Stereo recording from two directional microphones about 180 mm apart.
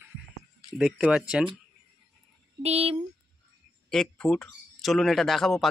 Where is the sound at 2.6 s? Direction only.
35° right (ahead or behind).